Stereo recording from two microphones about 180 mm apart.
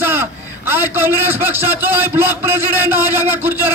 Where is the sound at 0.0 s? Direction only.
10° right (ahead or behind).